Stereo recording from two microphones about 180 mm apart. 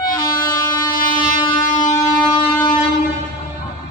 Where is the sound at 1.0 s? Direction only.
50° left (ahead or behind).